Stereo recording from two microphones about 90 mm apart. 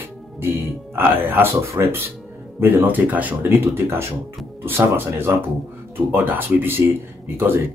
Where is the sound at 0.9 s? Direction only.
25° right (ahead or behind).